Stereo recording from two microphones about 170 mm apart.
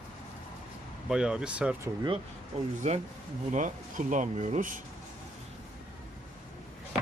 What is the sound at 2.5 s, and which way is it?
Speech, 40° right (ahead or behind).